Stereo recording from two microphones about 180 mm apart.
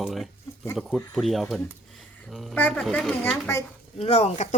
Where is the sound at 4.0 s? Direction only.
35° left (ahead or behind).